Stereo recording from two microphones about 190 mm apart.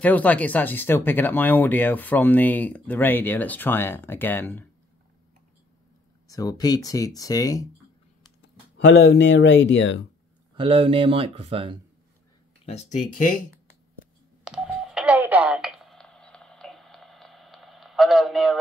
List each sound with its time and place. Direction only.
0.0 s speech: 10° left (ahead or behind)
6.2 s speech: 20° left (ahead or behind)
8.7 s speech: 65° left (ahead or behind)
10.5 s speech: 30° right (ahead or behind)
12.6 s speech: 35° left (ahead or behind)
14.4 s telephone dialing: 5° right (ahead or behind)